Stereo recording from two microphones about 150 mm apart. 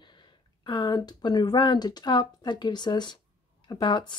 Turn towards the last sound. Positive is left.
turn(degrees=30)  # may be behind; listen again after turning